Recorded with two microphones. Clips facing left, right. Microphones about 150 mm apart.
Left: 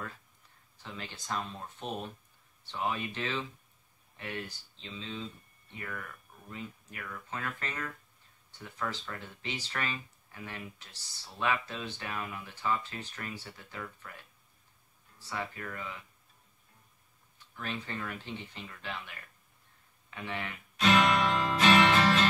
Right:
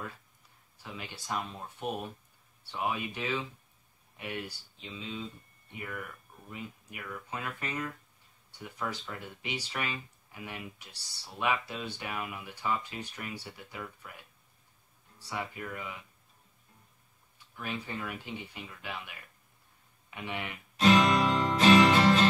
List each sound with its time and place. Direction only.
0.8 s speech: 10° right (ahead or behind)
17.6 s speech: 10° right (ahead or behind)
20.7 s music: 30° right (ahead or behind)